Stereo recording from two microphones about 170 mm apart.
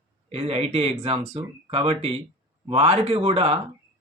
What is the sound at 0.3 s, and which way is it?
Speech, 40° right (ahead or behind).